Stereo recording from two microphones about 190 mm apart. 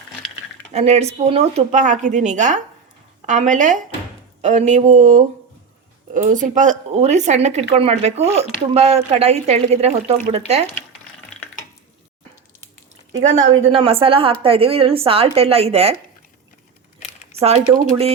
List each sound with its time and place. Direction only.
0.7 s speech: 35° right (ahead or behind)
13.4 s a woman's voice: 90° right
13.7 s a woman's voice: 30° right (ahead or behind)
17.4 s speech: 35° right (ahead or behind)